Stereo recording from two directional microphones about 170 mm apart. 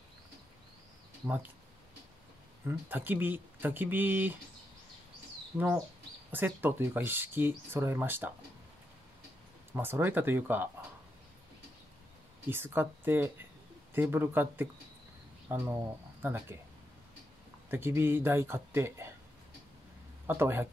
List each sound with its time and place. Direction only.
1.2 s speech: 10° right (ahead or behind)
2.6 s speech: 10° right (ahead or behind)
6.3 s speech: 10° right (ahead or behind)
9.7 s speech: 15° right (ahead or behind)
12.4 s speech: 15° right (ahead or behind)
17.6 s speech: 15° right (ahead or behind)
20.2 s speech: 15° right (ahead or behind)